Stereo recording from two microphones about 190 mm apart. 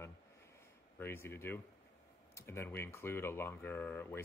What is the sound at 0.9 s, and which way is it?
Speech, 10° left (ahead or behind).